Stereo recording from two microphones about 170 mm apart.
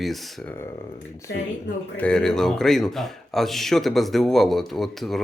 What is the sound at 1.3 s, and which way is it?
Speech, 70° left (ahead or behind).